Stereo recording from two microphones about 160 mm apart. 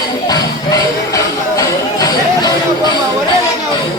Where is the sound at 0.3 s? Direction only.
20° left (ahead or behind).